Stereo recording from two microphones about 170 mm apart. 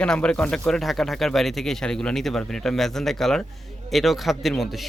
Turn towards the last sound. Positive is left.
turn(degrees=0)  # may be behind; listen again after turning